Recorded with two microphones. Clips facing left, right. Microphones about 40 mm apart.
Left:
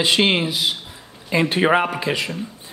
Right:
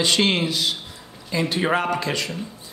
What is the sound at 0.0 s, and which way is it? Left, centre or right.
Speech, centre.